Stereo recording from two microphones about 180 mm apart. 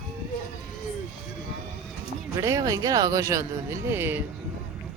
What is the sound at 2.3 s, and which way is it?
Speech, 20° right (ahead or behind).